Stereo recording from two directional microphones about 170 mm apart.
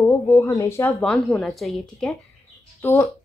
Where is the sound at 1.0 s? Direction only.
5° left (ahead or behind).